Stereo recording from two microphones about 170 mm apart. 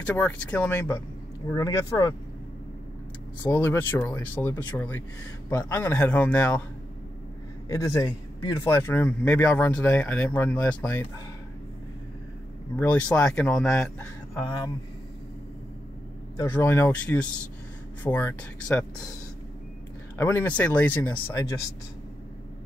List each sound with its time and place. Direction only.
0.0 s a man's voice: 10° left (ahead or behind)
3.4 s a man's voice: 10° left (ahead or behind)
7.6 s a man's voice: 20° left (ahead or behind)
12.7 s a man's voice: 10° left (ahead or behind)
16.3 s a man's voice: 10° left (ahead or behind)
20.2 s a man's voice: 15° left (ahead or behind)
21.3 s speech: 20° left (ahead or behind)